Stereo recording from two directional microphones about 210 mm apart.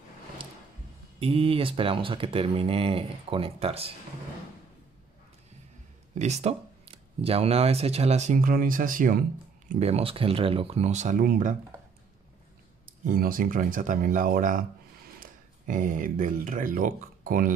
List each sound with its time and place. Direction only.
1.2 s speech: 25° right (ahead or behind)
6.1 s speech: 30° right (ahead or behind)
9.7 s speech: 30° right (ahead or behind)
12.8 s speech: 45° right (ahead or behind)
15.6 s speech: 40° right (ahead or behind)